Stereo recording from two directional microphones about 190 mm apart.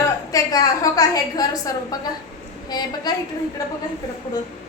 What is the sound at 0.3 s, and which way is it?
A woman's voice, 20° left (ahead or behind).